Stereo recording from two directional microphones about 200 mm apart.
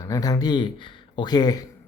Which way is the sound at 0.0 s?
20° left (ahead or behind).